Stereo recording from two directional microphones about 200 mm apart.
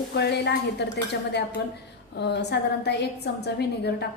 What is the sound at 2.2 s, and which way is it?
A woman's voice, 60° left (ahead or behind).